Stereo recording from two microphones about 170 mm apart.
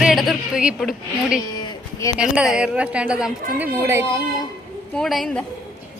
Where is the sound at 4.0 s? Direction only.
30° left (ahead or behind).